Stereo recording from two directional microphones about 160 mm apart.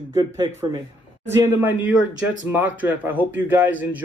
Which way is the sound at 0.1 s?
20° right (ahead or behind).